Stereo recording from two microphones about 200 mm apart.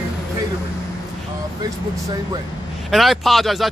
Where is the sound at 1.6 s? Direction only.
20° right (ahead or behind).